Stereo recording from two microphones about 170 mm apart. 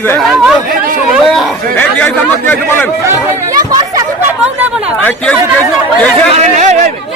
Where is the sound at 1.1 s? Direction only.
Centre (ahead or behind).